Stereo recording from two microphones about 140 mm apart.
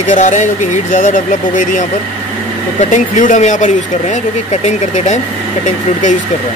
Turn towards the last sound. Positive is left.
turn(degrees=60)  # may be behind; listen again after turning